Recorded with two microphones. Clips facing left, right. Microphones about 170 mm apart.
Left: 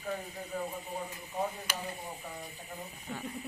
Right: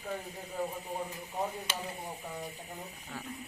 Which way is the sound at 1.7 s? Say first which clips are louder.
Even; 25° right (ahead or behind).